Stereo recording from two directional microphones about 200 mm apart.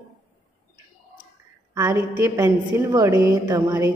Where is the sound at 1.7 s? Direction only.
15° right (ahead or behind).